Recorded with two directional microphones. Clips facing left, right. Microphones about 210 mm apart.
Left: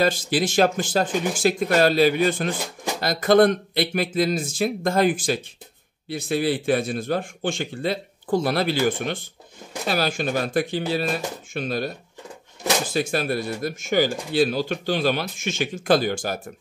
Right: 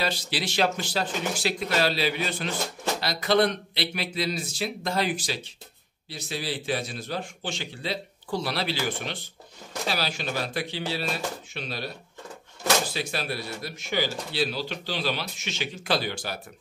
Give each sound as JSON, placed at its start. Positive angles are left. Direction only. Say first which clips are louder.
{"t": 0.0, "sound": "a man's voice", "louder": "left 8 dB", "side_deg": 50}
{"t": 12.9, "sound": "a man's voice", "louder": "left 8 dB", "side_deg": 50}